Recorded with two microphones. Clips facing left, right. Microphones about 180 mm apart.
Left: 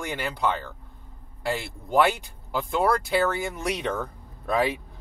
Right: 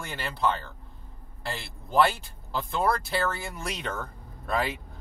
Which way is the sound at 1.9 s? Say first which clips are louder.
Left 2 dB; 15° left (ahead or behind).